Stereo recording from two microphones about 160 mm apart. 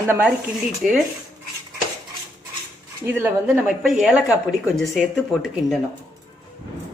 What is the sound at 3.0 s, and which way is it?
Speech, 10° right (ahead or behind).